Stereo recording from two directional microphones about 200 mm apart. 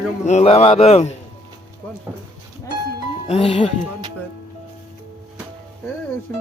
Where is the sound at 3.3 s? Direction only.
30° left (ahead or behind).